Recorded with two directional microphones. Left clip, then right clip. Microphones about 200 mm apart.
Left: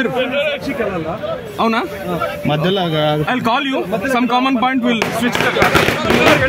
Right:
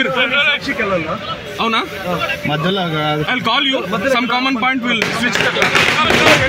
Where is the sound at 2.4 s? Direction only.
50° left (ahead or behind).